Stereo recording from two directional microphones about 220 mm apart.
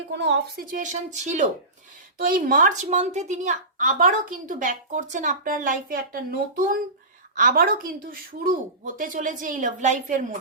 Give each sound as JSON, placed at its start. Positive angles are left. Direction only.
{"t": 0.1, "sound": "a woman's voice", "side_deg": -55}